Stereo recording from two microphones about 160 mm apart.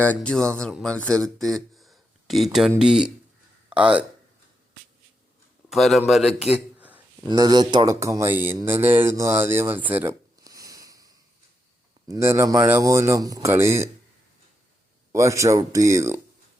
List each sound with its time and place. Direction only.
0.0 s speech: 10° left (ahead or behind); by 4.0 s 5° right (ahead or behind)
5.6 s a man's voice: centre (ahead or behind)
7.3 s speech: 25° right (ahead or behind)
10.4 s a sound: 20° right (ahead or behind)
12.0 s speech: 20° right (ahead or behind)
15.1 s speech: 20° right (ahead or behind)